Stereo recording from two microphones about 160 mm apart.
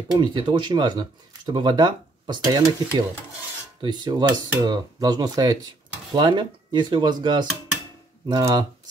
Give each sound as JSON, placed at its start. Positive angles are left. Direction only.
{"t": 0.1, "sound": "speech", "side_deg": -30}